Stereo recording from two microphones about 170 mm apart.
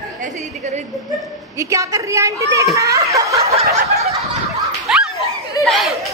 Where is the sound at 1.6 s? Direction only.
20° right (ahead or behind).